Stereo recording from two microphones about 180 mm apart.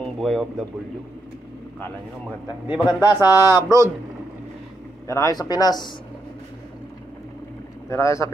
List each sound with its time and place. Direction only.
0.0 s speech: centre (ahead or behind)
2.4 s speech: 25° left (ahead or behind)
3.3 s speech: 15° right (ahead or behind)
5.0 s speech: 15° left (ahead or behind)
7.9 s speech: 15° left (ahead or behind)